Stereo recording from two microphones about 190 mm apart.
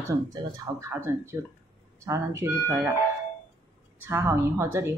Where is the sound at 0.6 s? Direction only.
10° right (ahead or behind).